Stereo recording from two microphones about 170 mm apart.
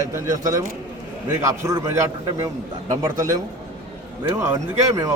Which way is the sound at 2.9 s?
20° right (ahead or behind).